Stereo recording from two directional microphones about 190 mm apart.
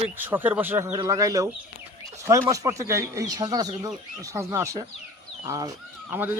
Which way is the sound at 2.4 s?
20° right (ahead or behind).